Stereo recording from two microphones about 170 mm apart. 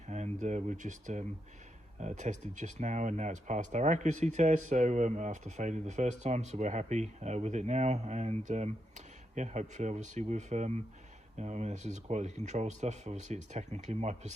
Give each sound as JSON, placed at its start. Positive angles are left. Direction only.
{"t": 0.1, "sound": "speech", "side_deg": -45}